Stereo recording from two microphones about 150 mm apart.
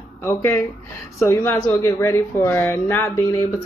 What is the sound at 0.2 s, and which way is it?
Speech, 15° left (ahead or behind).